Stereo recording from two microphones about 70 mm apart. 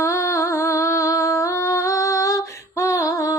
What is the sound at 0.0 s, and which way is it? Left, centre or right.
Humming, left.